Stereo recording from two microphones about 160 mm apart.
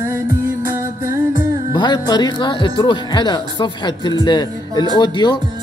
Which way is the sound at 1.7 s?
25° left (ahead or behind).